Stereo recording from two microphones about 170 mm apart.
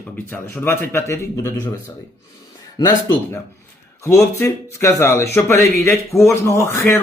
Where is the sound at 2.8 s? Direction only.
15° left (ahead or behind).